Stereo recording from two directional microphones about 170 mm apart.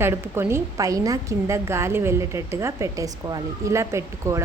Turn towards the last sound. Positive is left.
turn(degrees=-15)  # may be behind; listen again after turning